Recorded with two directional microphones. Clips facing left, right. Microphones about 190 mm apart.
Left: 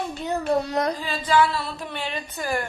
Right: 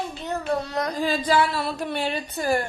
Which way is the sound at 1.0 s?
40° right (ahead or behind).